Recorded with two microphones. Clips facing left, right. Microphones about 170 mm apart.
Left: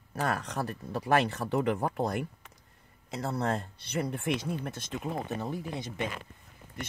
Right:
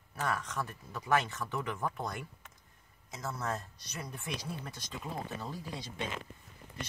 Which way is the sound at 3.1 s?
65° left (ahead or behind).